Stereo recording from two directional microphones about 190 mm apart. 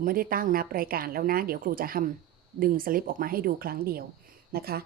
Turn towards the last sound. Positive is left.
turn(degrees=-55)  # may be behind; listen again after turning